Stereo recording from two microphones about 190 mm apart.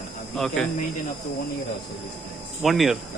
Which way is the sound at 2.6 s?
Centre (ahead or behind).